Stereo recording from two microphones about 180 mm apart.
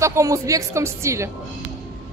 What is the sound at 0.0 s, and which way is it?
A woman's voice, 15° right (ahead or behind).